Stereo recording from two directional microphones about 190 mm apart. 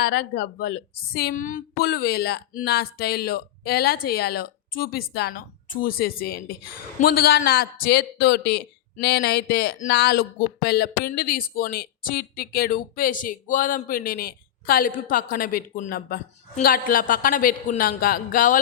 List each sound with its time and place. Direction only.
0.0 s a man's voice: 55° left (ahead or behind)